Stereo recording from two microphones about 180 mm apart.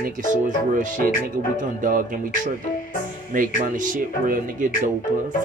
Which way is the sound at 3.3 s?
50° right (ahead or behind).